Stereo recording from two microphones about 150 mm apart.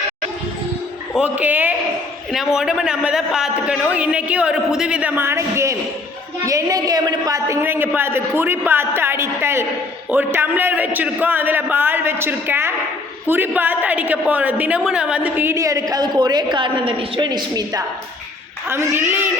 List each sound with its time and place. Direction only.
1.1 s a woman's voice: 10° right (ahead or behind); by 17.8 s 25° right (ahead or behind)
18.7 s a woman's voice: 15° right (ahead or behind)